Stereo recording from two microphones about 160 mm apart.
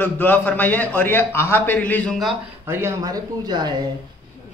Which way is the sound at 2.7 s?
15° right (ahead or behind).